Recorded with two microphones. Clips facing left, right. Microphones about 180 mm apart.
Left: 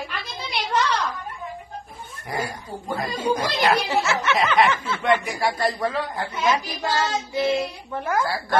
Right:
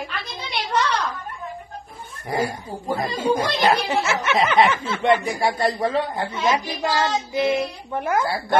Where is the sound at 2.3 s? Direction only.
25° right (ahead or behind).